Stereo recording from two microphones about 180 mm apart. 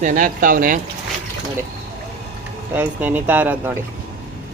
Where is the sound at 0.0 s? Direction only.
45° right (ahead or behind).